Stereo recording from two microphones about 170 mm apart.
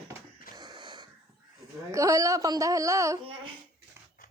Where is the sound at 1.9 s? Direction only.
20° right (ahead or behind).